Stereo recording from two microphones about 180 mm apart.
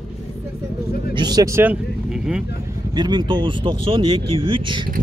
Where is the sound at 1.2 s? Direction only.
20° right (ahead or behind); by 2.5 s 5° right (ahead or behind).